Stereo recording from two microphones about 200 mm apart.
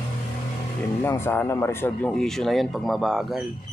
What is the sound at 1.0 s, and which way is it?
Speech, 10° left (ahead or behind).